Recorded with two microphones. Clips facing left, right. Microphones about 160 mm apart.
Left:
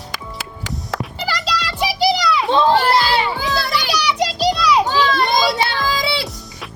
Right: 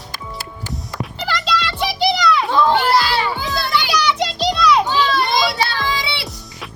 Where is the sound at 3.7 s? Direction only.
40° left (ahead or behind).